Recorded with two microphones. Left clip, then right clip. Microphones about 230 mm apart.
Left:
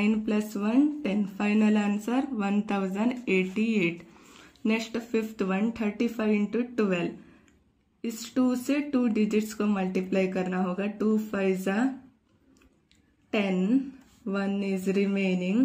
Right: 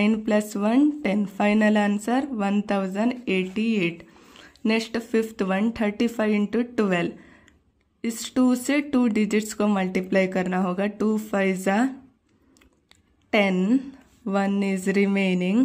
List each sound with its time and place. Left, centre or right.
0.0 s speech: right
13.3 s speech: right